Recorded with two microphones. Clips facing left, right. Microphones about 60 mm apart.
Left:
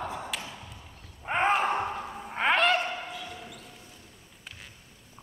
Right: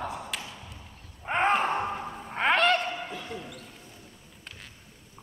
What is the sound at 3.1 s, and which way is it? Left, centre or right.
Bow-wow, right.